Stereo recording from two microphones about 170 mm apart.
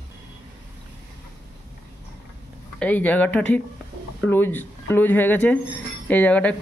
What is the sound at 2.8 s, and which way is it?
Speech, 10° left (ahead or behind).